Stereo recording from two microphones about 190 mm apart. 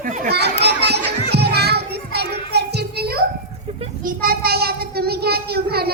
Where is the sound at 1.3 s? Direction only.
60° right (ahead or behind).